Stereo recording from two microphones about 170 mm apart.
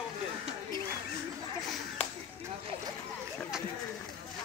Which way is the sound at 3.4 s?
5° right (ahead or behind).